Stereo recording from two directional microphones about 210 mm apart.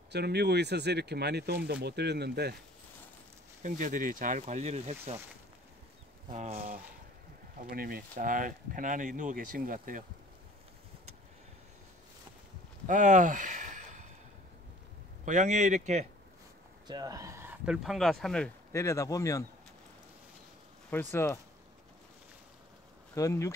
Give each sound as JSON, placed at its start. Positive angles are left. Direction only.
{"t": 0.1, "sound": "speech", "side_deg": -50}
{"t": 3.6, "sound": "speech", "side_deg": -35}
{"t": 6.3, "sound": "speech", "side_deg": -30}
{"t": 7.7, "sound": "speech", "side_deg": -45}
{"t": 12.8, "sound": "a sound", "side_deg": -35}
{"t": 15.2, "sound": "speech", "side_deg": -35}
{"t": 16.8, "sound": "speech", "side_deg": -20}
{"t": 20.9, "sound": "speech", "side_deg": 10}
{"t": 23.1, "sound": "speech", "side_deg": 15}